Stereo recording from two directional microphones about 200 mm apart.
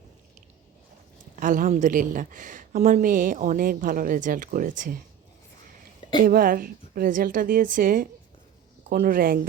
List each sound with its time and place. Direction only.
1.4 s speech: 40° right (ahead or behind)
6.1 s a woman's voice: 45° right (ahead or behind)